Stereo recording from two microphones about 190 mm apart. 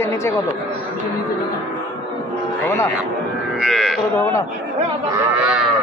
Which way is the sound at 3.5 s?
Centre (ahead or behind).